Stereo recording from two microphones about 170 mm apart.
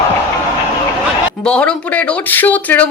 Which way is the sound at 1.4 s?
5° left (ahead or behind).